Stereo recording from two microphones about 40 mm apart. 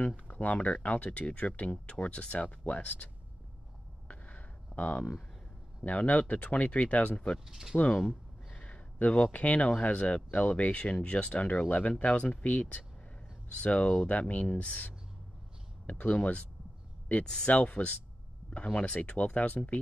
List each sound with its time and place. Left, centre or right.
0.3 s speech: left
4.1 s a sound: left
5.9 s speech: left
7.3 s speech: centre
7.7 s speech: left
8.5 s a sound: left
8.7 s speech: left
15.9 s speech: left
17.2 s speech: centre
17.5 s speech: left